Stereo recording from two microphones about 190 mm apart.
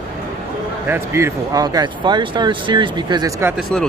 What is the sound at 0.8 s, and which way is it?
Speech, 10° right (ahead or behind).